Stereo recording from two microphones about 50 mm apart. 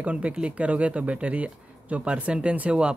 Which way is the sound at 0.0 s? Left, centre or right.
Right.